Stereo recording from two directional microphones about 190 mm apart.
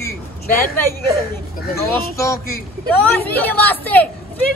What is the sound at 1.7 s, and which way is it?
A woman's voice, 15° left (ahead or behind).